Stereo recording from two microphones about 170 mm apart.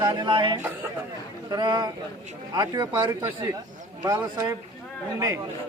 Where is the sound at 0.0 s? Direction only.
25° right (ahead or behind).